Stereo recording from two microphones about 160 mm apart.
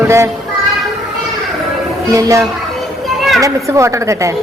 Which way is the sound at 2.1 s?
20° right (ahead or behind).